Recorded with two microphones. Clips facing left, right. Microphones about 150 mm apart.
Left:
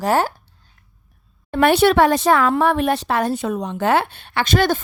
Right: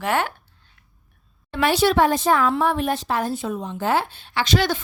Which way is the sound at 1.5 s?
55° left (ahead or behind).